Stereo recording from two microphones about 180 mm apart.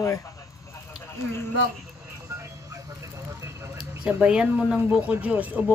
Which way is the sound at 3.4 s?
15° right (ahead or behind).